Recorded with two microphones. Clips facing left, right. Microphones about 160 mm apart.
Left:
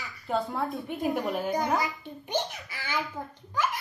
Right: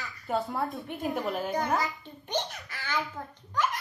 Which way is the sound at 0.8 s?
10° left (ahead or behind).